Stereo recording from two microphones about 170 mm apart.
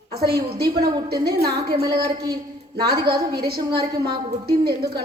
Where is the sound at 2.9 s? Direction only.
70° right (ahead or behind).